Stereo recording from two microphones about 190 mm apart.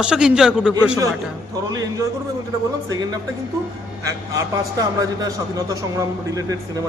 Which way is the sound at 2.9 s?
20° right (ahead or behind).